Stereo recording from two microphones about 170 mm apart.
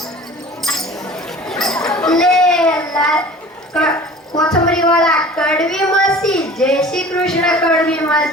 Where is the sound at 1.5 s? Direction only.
5° left (ahead or behind).